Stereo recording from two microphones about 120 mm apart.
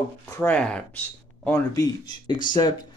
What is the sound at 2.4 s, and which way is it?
Speech, 35° left (ahead or behind).